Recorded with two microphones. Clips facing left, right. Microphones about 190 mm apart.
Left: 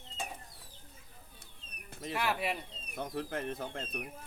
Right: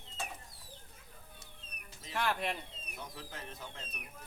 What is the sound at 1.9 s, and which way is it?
Bird, 60° left (ahead or behind).